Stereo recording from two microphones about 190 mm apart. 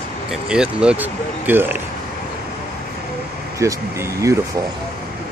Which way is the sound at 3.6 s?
15° right (ahead or behind).